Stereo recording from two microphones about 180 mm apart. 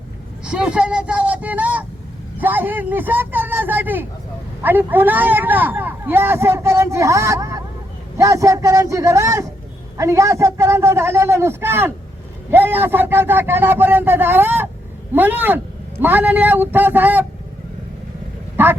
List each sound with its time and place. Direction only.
0.4 s a man's voice: 5° right (ahead or behind)
18.6 s speech: 10° right (ahead or behind)